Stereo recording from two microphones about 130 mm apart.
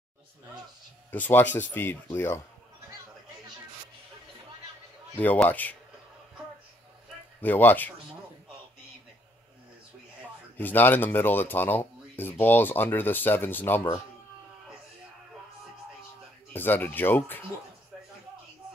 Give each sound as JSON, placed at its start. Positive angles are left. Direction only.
{"t": 1.1, "sound": "speech", "side_deg": 15}
{"t": 5.1, "sound": "speech", "side_deg": 15}
{"t": 7.4, "sound": "speech", "side_deg": 15}
{"t": 10.6, "sound": "speech", "side_deg": 15}
{"t": 16.5, "sound": "speech", "side_deg": 15}